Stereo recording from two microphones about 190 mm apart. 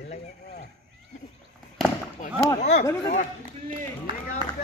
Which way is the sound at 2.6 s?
40° left (ahead or behind).